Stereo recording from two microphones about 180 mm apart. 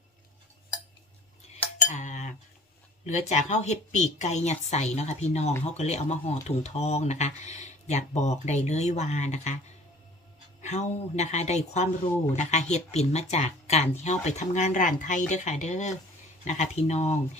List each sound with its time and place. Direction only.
1.9 s cutlery: 40° left (ahead or behind)
3.0 s speech: 40° left (ahead or behind)
10.6 s speech: 40° left (ahead or behind)